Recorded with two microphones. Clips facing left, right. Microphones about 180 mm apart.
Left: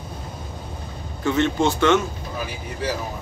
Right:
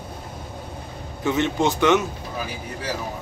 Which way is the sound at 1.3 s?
15° right (ahead or behind).